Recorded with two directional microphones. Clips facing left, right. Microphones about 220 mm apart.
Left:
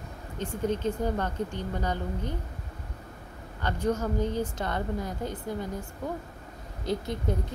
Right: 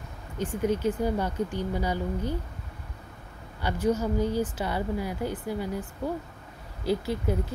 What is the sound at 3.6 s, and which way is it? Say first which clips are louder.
Speech: right 2 dB; 10° right (ahead or behind).